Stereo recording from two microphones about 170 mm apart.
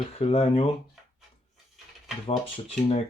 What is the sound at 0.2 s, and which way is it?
Speech, 35° left (ahead or behind).